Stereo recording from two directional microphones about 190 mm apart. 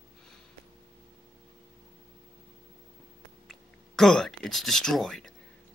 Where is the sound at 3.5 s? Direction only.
Centre (ahead or behind).